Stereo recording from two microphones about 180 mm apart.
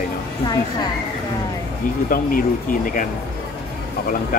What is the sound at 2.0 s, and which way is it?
Speech, 50° left (ahead or behind).